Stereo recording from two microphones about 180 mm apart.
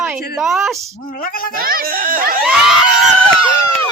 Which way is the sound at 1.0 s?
50° left (ahead or behind).